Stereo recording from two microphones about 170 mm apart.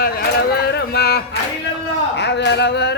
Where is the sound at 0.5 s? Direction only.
70° left (ahead or behind).